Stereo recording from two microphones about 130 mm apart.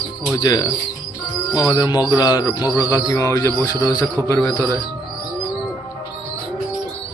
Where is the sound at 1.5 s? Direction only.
25° left (ahead or behind).